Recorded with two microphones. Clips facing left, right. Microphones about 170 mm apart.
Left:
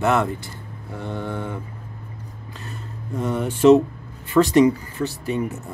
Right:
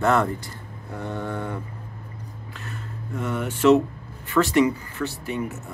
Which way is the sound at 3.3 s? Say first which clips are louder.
Left 4 dB; 30° left (ahead or behind).